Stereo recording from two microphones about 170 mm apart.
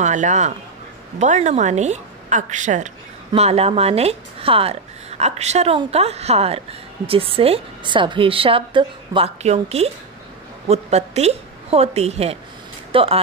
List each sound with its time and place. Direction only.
0.0 s a woman's voice: 45° right (ahead or behind)